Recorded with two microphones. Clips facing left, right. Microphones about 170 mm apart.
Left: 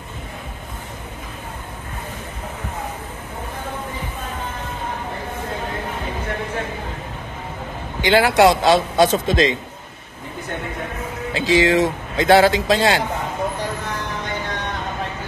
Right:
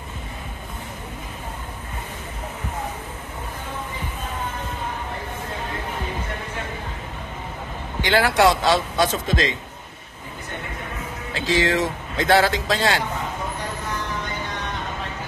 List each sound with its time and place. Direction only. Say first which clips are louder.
8.0 s speech: left 4 dB; 15° left (ahead or behind)
11.3 s speech: left 5 dB; 15° left (ahead or behind)